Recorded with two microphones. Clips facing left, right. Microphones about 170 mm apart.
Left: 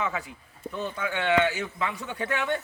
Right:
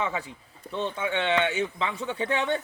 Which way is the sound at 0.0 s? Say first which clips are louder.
Right 1 dB; 30° right (ahead or behind).